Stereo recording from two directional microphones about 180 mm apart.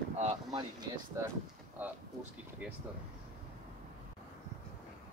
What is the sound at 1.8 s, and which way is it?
Speech, 10° right (ahead or behind).